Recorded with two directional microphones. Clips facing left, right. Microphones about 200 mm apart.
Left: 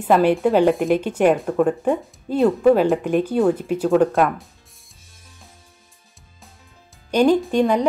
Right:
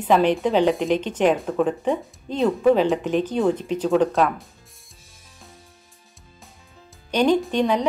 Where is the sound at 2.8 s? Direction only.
10° left (ahead or behind).